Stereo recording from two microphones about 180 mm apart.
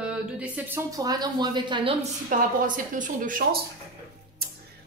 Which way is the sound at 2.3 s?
50° right (ahead or behind).